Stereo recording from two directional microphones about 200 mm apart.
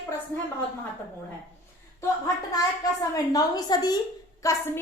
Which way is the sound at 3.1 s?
20° left (ahead or behind).